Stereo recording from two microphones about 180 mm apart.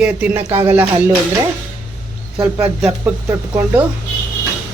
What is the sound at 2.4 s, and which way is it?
A man's voice, 10° right (ahead or behind).